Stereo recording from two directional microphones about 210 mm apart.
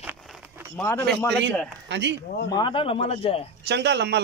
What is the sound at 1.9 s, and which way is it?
Speech, 55° right (ahead or behind).